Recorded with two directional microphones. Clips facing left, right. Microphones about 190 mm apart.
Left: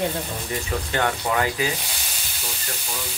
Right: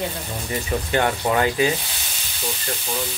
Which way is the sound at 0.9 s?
25° right (ahead or behind).